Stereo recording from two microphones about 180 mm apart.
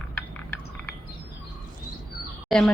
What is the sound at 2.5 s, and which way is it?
Speech, 5° left (ahead or behind).